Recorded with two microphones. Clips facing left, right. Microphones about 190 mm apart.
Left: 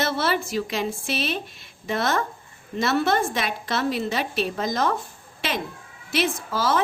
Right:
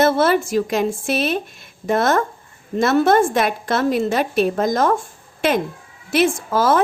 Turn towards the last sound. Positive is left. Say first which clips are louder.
# right 7 dB
turn(degrees=-50)  # may be behind; listen again after turning